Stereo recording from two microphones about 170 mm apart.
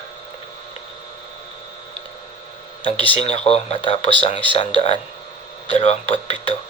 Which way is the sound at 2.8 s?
30° left (ahead or behind).